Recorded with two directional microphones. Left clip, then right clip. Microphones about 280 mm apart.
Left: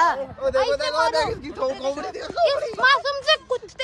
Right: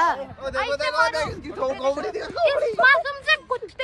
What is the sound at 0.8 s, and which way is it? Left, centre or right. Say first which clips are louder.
Speech: left 1 dB; left.